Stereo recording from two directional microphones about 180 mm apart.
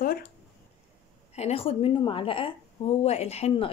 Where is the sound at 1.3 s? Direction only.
35° left (ahead or behind).